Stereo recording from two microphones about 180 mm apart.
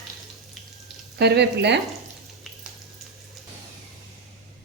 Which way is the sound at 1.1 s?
65° right (ahead or behind).